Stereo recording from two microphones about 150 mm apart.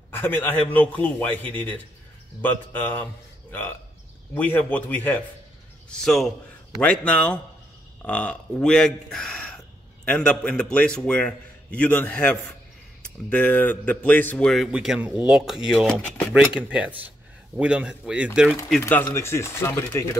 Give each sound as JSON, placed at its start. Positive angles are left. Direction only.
{"t": 0.1, "sound": "a man's voice", "side_deg": 15}
{"t": 4.3, "sound": "a man's voice", "side_deg": 10}
{"t": 18.8, "sound": "a man's voice", "side_deg": 15}